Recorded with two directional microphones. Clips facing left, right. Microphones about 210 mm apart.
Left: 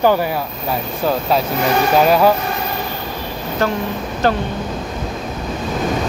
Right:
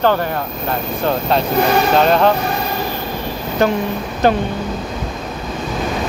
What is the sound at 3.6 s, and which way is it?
Speech, 15° right (ahead or behind).